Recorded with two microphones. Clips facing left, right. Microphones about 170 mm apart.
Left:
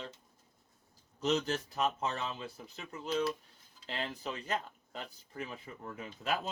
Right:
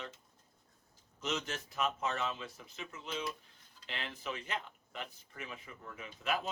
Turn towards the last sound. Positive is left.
turn(degrees=35)  # may be behind; listen again after turning